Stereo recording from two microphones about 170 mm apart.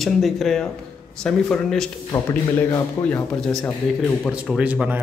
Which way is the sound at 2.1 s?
25° left (ahead or behind).